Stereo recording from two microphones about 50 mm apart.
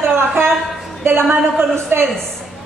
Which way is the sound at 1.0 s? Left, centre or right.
Right.